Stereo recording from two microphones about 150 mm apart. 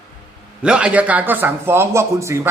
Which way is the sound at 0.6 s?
5° right (ahead or behind).